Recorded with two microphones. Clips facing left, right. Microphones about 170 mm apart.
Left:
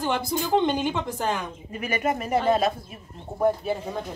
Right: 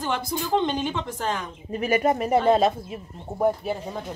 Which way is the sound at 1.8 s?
35° right (ahead or behind).